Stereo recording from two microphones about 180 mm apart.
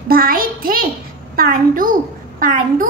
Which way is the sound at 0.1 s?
55° right (ahead or behind).